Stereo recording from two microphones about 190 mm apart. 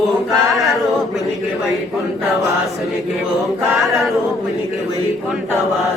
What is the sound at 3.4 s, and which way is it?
Chant, centre (ahead or behind).